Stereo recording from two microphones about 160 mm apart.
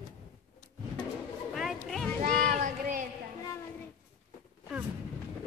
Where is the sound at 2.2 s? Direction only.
55° right (ahead or behind).